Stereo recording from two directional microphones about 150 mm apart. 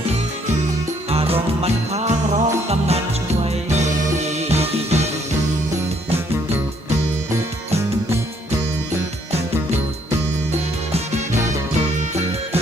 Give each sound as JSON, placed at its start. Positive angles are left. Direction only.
{"t": 1.1, "sound": "music", "side_deg": -40}